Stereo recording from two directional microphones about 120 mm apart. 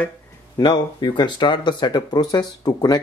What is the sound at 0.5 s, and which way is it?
Speech, 35° left (ahead or behind).